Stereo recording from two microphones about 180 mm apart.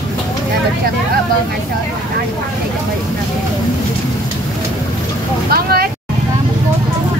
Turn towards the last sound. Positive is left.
turn(degrees=-55)  # may be behind; listen again after turning